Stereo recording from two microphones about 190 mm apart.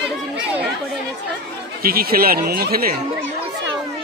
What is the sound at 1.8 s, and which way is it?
A man's voice, 50° right (ahead or behind).